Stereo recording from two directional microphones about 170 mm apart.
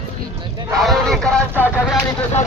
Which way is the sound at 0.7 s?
Centre (ahead or behind).